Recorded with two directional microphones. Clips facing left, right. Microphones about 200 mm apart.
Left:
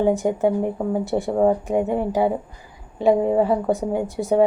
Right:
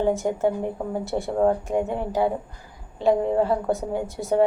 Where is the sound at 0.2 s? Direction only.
15° left (ahead or behind).